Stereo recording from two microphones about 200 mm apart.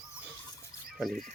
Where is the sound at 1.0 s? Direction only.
Centre (ahead or behind).